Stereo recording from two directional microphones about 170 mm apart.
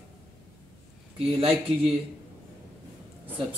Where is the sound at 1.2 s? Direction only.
35° right (ahead or behind).